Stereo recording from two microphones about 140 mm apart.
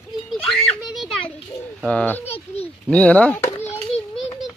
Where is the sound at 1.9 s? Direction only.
10° left (ahead or behind).